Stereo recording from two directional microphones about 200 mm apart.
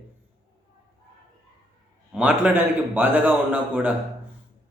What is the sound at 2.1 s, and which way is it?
A man's voice, 5° right (ahead or behind).